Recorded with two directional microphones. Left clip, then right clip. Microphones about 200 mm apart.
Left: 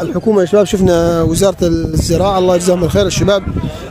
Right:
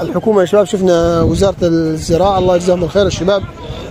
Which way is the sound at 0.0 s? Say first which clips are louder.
Right 1 dB; 30° left (ahead or behind).